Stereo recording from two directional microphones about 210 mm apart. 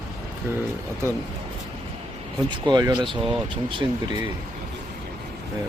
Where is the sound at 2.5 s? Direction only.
20° right (ahead or behind).